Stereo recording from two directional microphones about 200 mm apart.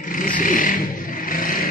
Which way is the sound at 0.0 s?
40° left (ahead or behind).